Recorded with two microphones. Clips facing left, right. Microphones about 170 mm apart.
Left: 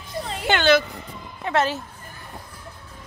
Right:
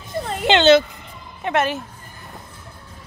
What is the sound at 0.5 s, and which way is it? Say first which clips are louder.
A woman's voice: right 5 dB; 25° right (ahead or behind).